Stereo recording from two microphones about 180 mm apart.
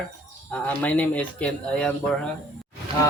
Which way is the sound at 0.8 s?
5° left (ahead or behind).